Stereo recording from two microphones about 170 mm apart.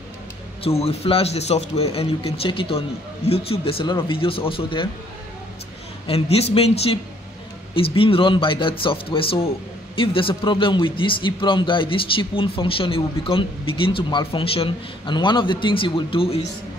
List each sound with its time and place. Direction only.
0.7 s a man's voice: 35° left (ahead or behind)
6.0 s a man's voice: 35° left (ahead or behind)